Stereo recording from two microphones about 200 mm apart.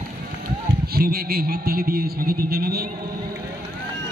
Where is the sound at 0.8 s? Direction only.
50° right (ahead or behind).